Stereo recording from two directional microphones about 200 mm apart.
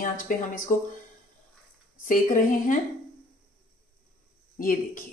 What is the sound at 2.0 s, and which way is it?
Speech, 40° left (ahead or behind).